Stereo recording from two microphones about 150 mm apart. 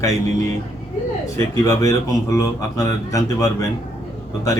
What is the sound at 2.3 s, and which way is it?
Speech, 20° left (ahead or behind).